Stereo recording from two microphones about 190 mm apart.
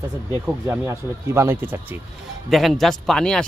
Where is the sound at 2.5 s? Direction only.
Centre (ahead or behind).